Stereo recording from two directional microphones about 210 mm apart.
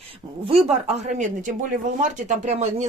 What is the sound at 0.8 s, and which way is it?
Speech, 35° right (ahead or behind).